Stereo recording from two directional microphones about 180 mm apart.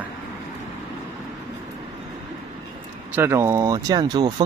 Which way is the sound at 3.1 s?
15° right (ahead or behind).